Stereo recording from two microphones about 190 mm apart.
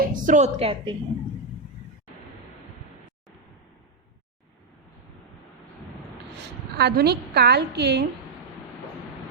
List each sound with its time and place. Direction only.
0.0 s a woman's voice: 45° right (ahead or behind); by 0.9 s 30° right (ahead or behind)
6.7 s a woman's voice: 60° right (ahead or behind)